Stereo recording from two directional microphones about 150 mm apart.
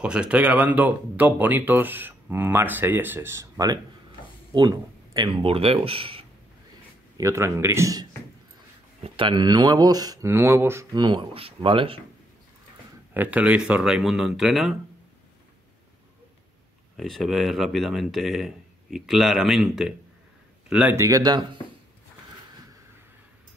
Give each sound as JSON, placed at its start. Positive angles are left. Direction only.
{"t": 0.0, "sound": "speech", "side_deg": -5}
{"t": 7.2, "sound": "speech", "side_deg": -20}
{"t": 9.0, "sound": "speech", "side_deg": -35}
{"t": 11.0, "sound": "speech", "side_deg": -30}
{"t": 13.1, "sound": "speech", "side_deg": -10}
{"t": 16.9, "sound": "speech", "side_deg": 0}
{"t": 20.7, "sound": "speech", "side_deg": -15}